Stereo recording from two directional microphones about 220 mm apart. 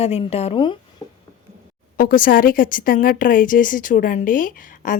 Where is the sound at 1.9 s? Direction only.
40° left (ahead or behind).